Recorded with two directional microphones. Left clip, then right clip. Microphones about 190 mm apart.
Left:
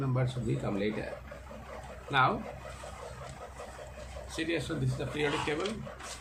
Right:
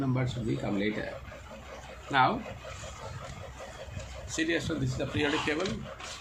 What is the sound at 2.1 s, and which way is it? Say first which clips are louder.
Speech: right 2 dB; 30° right (ahead or behind).